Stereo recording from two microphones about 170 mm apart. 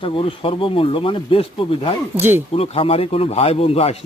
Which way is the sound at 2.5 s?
35° left (ahead or behind).